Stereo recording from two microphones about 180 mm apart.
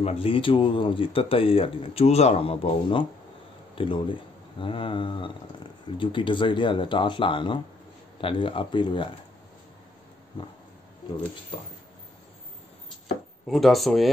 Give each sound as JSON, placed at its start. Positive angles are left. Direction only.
{"t": 0.0, "sound": "speech", "side_deg": 35}
{"t": 13.5, "sound": "speech", "side_deg": 0}